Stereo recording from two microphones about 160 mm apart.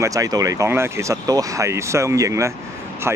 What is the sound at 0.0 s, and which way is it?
Speech, 20° right (ahead or behind).